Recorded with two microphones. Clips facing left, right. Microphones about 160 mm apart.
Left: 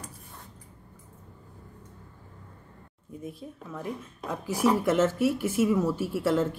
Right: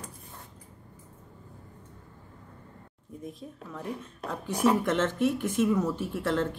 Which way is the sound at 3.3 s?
5° left (ahead or behind).